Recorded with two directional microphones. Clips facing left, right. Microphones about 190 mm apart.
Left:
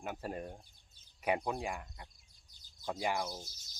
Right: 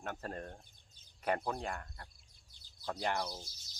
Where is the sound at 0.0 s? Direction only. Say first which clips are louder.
Left 2 dB; 10° left (ahead or behind).